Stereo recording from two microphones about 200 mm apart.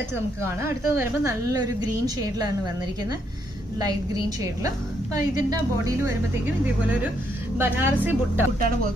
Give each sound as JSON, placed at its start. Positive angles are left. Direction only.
{"t": 0.6, "sound": "a woman's voice", "side_deg": -15}
{"t": 4.6, "sound": "a woman's voice", "side_deg": -15}
{"t": 7.5, "sound": "a woman's voice", "side_deg": -10}